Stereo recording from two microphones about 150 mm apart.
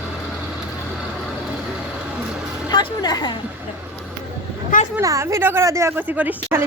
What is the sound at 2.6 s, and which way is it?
Speech, 25° left (ahead or behind).